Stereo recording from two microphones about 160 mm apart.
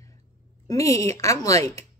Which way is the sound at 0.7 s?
20° left (ahead or behind).